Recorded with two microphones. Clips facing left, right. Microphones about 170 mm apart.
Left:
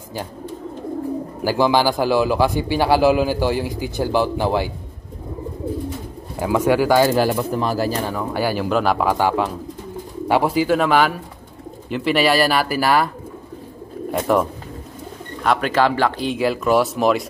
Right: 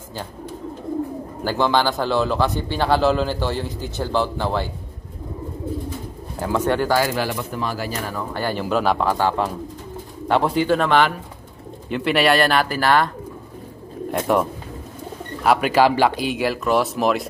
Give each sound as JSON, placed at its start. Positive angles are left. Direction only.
{"t": 1.4, "sound": "a man's voice", "side_deg": 10}
{"t": 6.4, "sound": "a man's voice", "side_deg": 10}
{"t": 7.1, "sound": "speech", "side_deg": 40}
{"t": 8.1, "sound": "a man's voice", "side_deg": 10}
{"t": 10.2, "sound": "speech", "side_deg": 10}
{"t": 14.1, "sound": "speech", "side_deg": 0}